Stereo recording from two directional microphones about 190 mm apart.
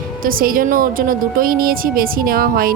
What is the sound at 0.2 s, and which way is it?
Speech, 50° right (ahead or behind).